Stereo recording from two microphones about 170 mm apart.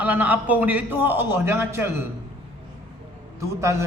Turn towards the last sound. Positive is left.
turn(degrees=-15)  # may be behind; listen again after turning